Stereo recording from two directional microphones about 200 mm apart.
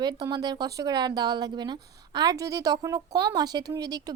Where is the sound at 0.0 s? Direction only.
20° right (ahead or behind).